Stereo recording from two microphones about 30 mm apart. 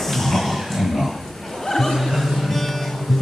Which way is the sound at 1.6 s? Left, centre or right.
Centre.